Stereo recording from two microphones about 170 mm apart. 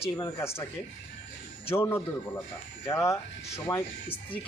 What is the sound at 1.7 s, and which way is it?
Speech, 15° left (ahead or behind).